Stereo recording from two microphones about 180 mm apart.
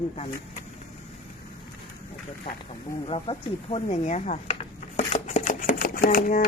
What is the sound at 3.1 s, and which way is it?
Speech, 35° left (ahead or behind).